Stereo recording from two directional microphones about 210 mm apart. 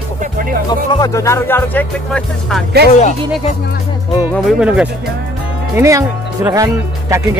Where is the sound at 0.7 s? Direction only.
15° left (ahead or behind).